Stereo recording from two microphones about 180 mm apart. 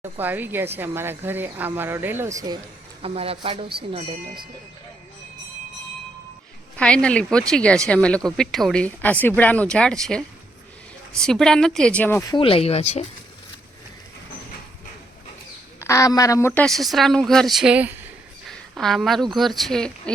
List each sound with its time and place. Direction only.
0.0 s speech: 10° right (ahead or behind)
3.0 s speech: 30° right (ahead or behind)
6.7 s speech: 5° left (ahead or behind); by 13.1 s 35° left (ahead or behind)
15.8 s speech: 15° left (ahead or behind)